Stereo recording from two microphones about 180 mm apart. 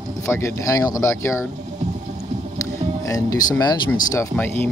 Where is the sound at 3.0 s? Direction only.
20° left (ahead or behind).